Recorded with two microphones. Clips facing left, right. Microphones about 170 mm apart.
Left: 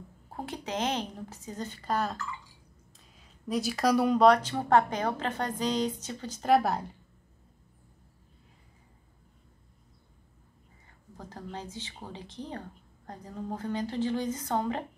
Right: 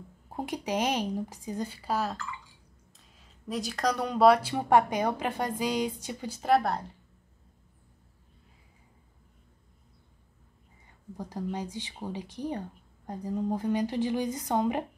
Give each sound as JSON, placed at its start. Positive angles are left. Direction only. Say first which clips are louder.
{"t": 0.3, "sound": "a woman's voice", "louder": "right 4 dB", "side_deg": -15}
{"t": 3.2, "sound": "a woman's voice", "louder": "left 3 dB", "side_deg": 0}
{"t": 11.1, "sound": "a woman's voice", "louder": "right 6 dB", "side_deg": -15}